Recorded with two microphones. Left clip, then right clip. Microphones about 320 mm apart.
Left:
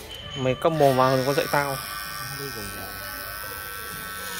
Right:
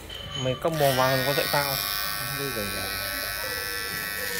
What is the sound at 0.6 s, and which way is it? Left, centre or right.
Speech, left.